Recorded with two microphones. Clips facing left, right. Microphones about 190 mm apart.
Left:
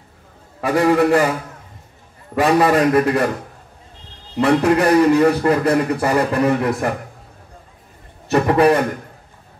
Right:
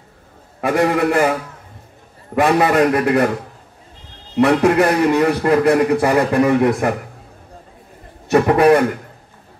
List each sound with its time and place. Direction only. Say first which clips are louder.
0.6 s a man's voice: left 1 dB; 55° right (ahead or behind)
2.3 s a man's voice: even; 55° right (ahead or behind)
4.4 s a man's voice: right 2 dB; 55° right (ahead or behind)
8.3 s a man's voice: right 2 dB; 55° right (ahead or behind)